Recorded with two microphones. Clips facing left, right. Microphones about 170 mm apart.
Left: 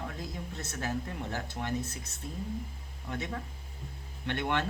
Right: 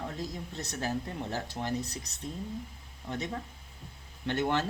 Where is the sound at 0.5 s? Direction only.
35° right (ahead or behind).